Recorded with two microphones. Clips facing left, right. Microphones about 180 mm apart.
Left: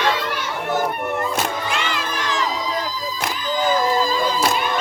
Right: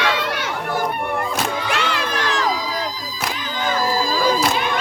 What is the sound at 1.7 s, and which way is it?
Crowd, 70° right (ahead or behind).